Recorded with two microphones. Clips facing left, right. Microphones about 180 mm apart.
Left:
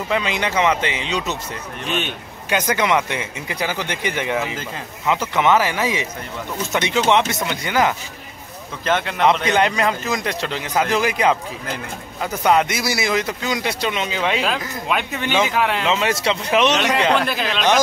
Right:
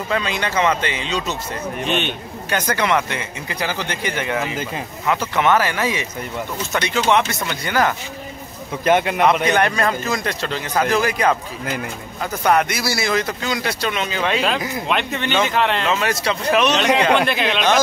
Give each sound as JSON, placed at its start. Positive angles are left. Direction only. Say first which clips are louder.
{"t": 0.1, "sound": "a man's voice", "louder": "left 1 dB", "side_deg": 15}
{"t": 1.9, "sound": "speech", "louder": "right 2 dB", "side_deg": 5}
{"t": 2.5, "sound": "a man's voice", "louder": "left 1 dB", "side_deg": 15}
{"t": 8.8, "sound": "a man's voice", "louder": "right 2 dB", "side_deg": -15}
{"t": 9.5, "sound": "a man's voice", "louder": "even", "side_deg": 20}
{"t": 15.9, "sound": "speech", "louder": "left 1 dB", "side_deg": 20}
{"t": 17.3, "sound": "speech", "louder": "right 3 dB", "side_deg": 0}